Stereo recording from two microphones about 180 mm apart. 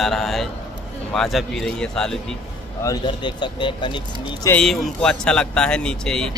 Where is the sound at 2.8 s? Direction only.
20° left (ahead or behind).